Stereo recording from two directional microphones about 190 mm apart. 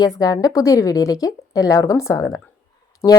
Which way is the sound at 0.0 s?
20° left (ahead or behind).